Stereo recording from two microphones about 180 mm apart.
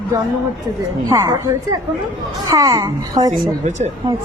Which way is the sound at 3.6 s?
40° right (ahead or behind).